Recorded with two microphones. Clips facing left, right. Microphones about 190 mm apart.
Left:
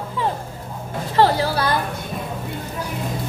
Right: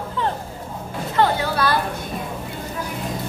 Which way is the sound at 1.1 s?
30° left (ahead or behind).